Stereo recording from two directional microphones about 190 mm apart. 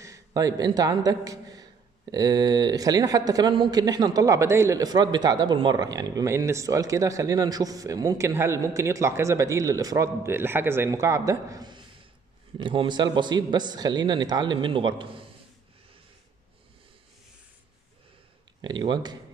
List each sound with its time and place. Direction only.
0.0 s speech: 15° right (ahead or behind)
18.6 s speech: 25° right (ahead or behind)